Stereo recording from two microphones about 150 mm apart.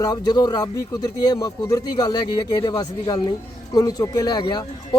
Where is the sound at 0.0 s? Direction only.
25° left (ahead or behind).